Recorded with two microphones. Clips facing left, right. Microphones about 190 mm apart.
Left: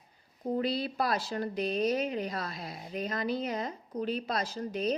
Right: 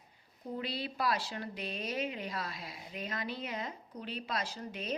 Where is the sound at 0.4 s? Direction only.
45° left (ahead or behind).